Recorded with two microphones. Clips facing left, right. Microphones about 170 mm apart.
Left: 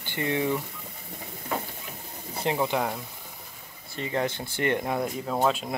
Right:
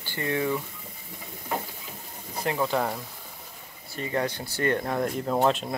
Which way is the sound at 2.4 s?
20° left (ahead or behind).